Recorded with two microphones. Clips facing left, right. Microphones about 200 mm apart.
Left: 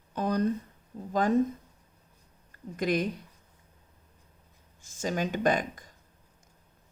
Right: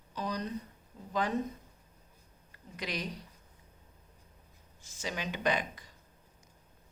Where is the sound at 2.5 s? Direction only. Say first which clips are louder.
Left 11 dB; 50° left (ahead or behind).